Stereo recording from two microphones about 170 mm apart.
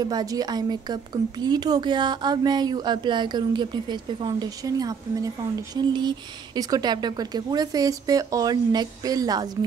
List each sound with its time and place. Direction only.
0.0 s a woman's voice: 20° right (ahead or behind)